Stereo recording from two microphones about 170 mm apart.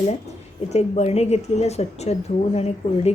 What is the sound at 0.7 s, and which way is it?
A woman's voice, 40° left (ahead or behind).